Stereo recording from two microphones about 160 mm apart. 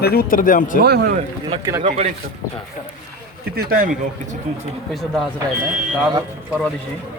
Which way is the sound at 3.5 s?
65° right (ahead or behind).